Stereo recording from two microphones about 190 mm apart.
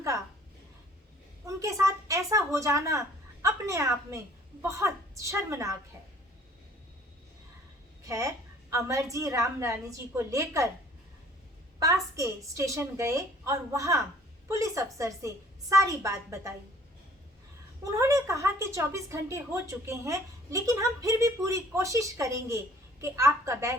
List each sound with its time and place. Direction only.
1.5 s a woman's voice: 15° right (ahead or behind)
8.0 s a woman's voice: 15° right (ahead or behind)
11.8 s a woman's voice: 15° right (ahead or behind)
17.9 s a woman's voice: 15° right (ahead or behind)